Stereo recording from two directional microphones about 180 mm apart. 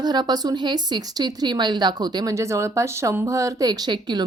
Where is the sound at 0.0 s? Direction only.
25° right (ahead or behind).